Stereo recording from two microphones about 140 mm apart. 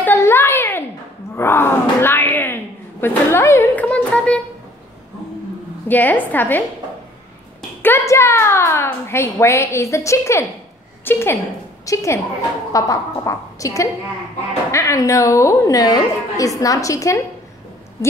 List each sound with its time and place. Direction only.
0.0 s a sound: 15° left (ahead or behind)
1.3 s speech: 15° left (ahead or behind)
5.9 s a woman's voice: 10° left (ahead or behind)
7.8 s a woman's voice: 20° left (ahead or behind)